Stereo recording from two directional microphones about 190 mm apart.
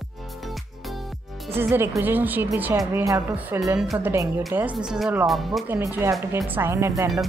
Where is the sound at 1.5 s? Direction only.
15° right (ahead or behind).